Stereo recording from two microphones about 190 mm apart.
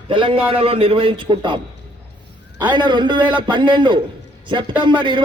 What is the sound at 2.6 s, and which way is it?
A man's voice, 25° right (ahead or behind).